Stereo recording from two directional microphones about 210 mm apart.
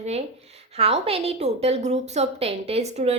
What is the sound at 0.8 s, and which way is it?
A woman's voice, 30° right (ahead or behind).